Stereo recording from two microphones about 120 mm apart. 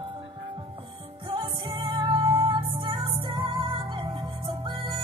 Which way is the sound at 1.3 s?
45° right (ahead or behind).